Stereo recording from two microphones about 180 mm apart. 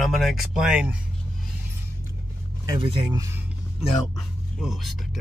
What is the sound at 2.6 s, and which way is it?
Speech, 20° right (ahead or behind).